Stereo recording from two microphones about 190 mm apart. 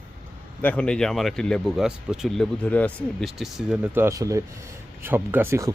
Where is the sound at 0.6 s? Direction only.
5° left (ahead or behind).